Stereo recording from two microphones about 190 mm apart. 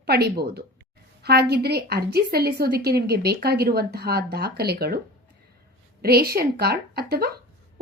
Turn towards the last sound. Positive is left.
turn(degrees=-55)  # may be behind; listen again after turning